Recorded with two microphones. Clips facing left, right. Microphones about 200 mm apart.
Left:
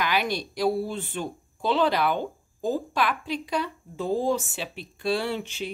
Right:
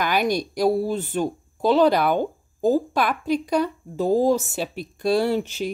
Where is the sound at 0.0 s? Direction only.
45° right (ahead or behind).